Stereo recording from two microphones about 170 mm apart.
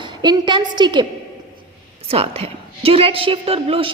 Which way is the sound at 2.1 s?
35° right (ahead or behind).